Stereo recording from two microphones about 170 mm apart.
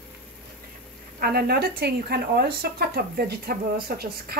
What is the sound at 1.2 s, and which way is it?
Speech, 65° right (ahead or behind).